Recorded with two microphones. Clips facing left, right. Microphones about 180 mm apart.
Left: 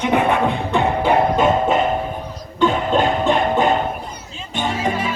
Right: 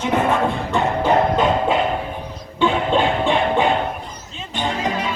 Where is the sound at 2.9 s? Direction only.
40° left (ahead or behind).